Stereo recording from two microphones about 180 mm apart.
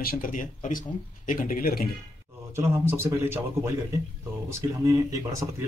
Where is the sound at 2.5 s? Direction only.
15° right (ahead or behind).